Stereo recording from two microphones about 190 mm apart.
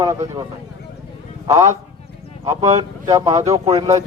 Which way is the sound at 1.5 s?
15° right (ahead or behind).